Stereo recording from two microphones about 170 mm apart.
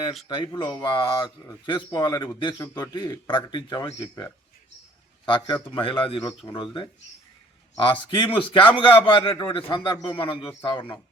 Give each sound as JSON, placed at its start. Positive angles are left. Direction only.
{"t": 0.3, "sound": "a man's voice", "side_deg": 25}
{"t": 7.9, "sound": "a man's voice", "side_deg": 30}